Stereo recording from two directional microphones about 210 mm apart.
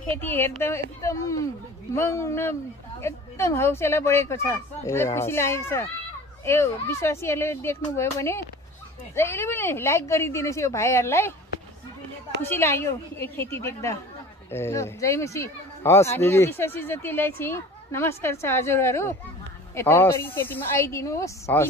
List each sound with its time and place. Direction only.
0.0 s speech: 10° left (ahead or behind)
12.4 s speech: 10° left (ahead or behind)